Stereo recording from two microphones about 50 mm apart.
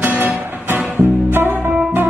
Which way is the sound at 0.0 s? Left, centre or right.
Right.